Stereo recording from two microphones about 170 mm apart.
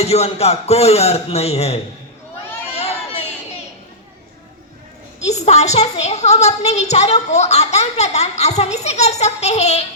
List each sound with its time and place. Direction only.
0.0 s a woman's voice: 40° left (ahead or behind)
2.7 s a sound: 35° left (ahead or behind)
5.2 s a woman's voice: 40° left (ahead or behind)